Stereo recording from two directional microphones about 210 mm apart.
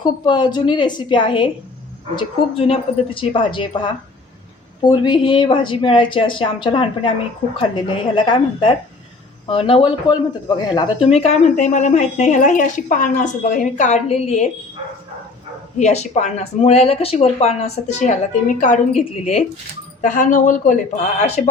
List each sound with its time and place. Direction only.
0.0 s a woman's voice: 20° left (ahead or behind)
15.8 s a woman's voice: 35° left (ahead or behind)